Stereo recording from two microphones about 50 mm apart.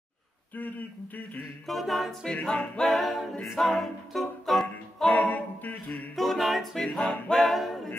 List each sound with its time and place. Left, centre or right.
0.6 s a sound: left
1.7 s a capella: centre
2.2 s music: centre
2.9 s a capella: centre
3.6 s music: centre
5.1 s music: left
6.1 s a capella: centre
6.8 s music: centre
7.3 s a capella: centre